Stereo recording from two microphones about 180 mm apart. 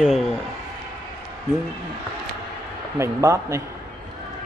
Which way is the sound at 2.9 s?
15° right (ahead or behind).